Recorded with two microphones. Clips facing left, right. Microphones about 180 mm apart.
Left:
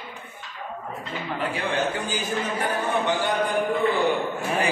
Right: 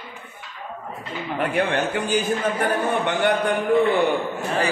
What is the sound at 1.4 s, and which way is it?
Speech, 60° right (ahead or behind).